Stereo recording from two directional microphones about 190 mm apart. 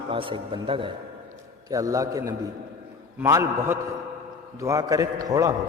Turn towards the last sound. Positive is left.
turn(degrees=-20)  # may be behind; listen again after turning